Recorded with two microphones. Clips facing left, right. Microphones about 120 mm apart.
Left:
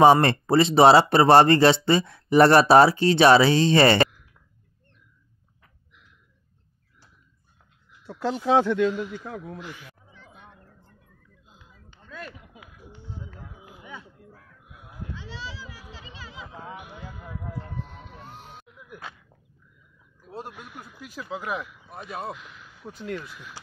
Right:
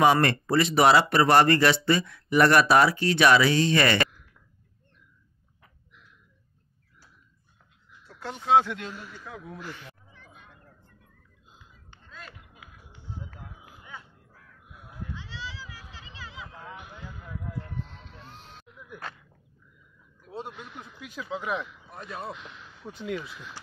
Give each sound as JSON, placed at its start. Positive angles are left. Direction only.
{"t": 0.0, "sound": "speech", "side_deg": 30}
{"t": 8.1, "sound": "speech", "side_deg": 90}
{"t": 8.9, "sound": "a man's voice", "side_deg": 15}
{"t": 9.7, "sound": "a sound", "side_deg": 5}
{"t": 14.7, "sound": "sheep", "side_deg": 10}
{"t": 16.4, "sound": "a sound", "side_deg": 15}
{"t": 17.8, "sound": "music", "side_deg": 15}
{"t": 20.3, "sound": "speech", "side_deg": 5}